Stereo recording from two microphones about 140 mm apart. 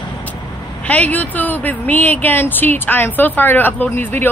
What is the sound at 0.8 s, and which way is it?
Speech, 10° left (ahead or behind).